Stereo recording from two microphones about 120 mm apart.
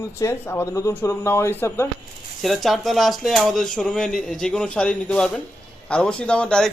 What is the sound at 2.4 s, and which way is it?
A man's voice, centre (ahead or behind).